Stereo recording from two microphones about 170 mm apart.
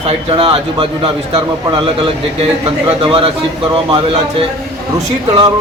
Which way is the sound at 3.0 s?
35° right (ahead or behind).